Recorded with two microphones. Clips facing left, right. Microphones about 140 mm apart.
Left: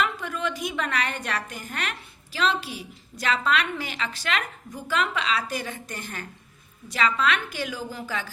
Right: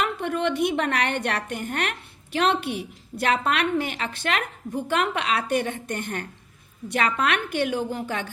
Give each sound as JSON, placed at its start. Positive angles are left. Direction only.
{"t": 0.0, "sound": "a woman's voice", "side_deg": -60}